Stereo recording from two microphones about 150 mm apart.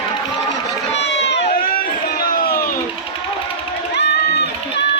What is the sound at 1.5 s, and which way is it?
Run, 75° left (ahead or behind).